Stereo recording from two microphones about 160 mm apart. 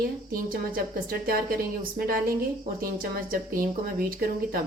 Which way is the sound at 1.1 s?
65° right (ahead or behind).